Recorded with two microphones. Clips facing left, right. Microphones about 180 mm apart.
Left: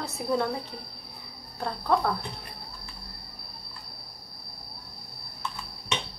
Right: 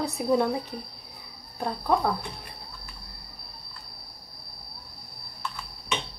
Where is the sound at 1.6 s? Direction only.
15° right (ahead or behind).